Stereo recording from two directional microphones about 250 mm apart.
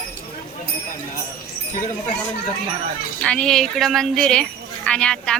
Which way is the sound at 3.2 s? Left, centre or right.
Centre.